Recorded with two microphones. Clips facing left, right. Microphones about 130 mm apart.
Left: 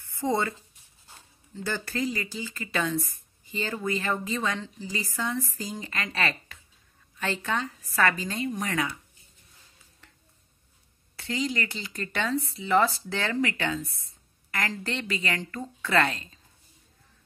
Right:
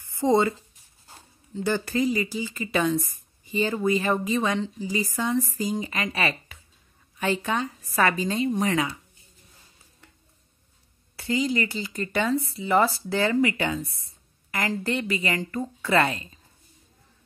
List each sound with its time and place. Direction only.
0.1 s a woman's voice: 20° right (ahead or behind)
11.1 s speech: 10° right (ahead or behind)